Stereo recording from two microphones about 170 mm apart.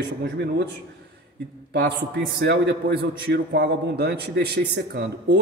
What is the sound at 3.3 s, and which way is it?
A man's voice, 80° right.